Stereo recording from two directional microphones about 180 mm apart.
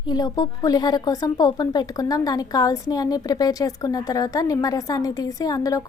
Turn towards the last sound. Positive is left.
turn(degrees=20)  # may be behind; listen again after turning